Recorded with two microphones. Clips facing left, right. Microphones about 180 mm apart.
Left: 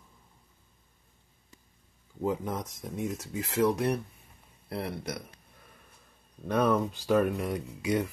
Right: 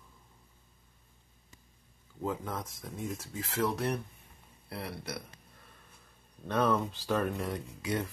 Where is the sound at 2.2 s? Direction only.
20° left (ahead or behind).